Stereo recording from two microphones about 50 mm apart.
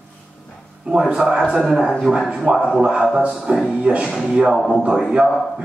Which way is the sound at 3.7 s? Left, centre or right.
Centre.